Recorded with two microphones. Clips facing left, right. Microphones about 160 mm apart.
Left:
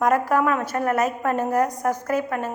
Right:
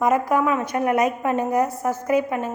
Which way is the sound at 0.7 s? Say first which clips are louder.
Right 2 dB; 10° right (ahead or behind).